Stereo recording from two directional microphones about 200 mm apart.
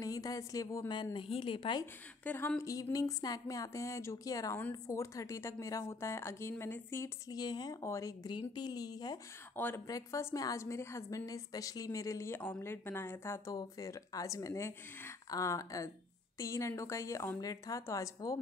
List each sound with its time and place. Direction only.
0.0 s a woman's voice: 15° left (ahead or behind)
2.2 s speech: 10° left (ahead or behind)